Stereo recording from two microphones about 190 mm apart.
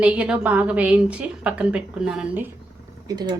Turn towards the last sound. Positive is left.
turn(degrees=-20)  # may be behind; listen again after turning